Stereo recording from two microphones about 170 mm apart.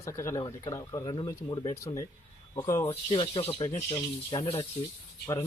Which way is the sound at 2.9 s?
35° left (ahead or behind).